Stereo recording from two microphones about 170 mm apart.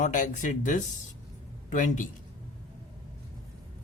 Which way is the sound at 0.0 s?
50° left (ahead or behind).